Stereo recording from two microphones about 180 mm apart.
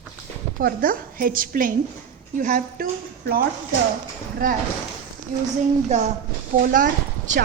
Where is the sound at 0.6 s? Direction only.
55° right (ahead or behind).